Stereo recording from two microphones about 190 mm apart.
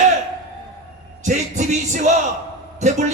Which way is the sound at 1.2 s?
40° right (ahead or behind).